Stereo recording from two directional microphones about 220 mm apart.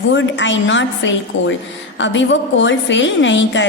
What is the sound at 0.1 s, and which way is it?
A woman's voice, 55° left (ahead or behind).